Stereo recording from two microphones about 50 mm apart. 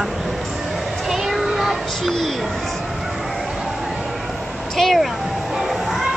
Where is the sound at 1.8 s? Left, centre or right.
Centre.